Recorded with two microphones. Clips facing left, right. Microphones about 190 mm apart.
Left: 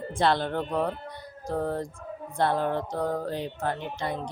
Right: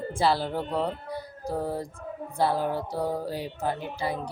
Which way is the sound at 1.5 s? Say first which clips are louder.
Left 1 dB; 5° right (ahead or behind).